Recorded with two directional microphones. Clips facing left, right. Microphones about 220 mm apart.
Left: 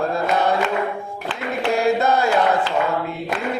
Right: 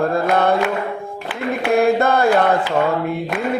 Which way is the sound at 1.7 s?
55° right (ahead or behind).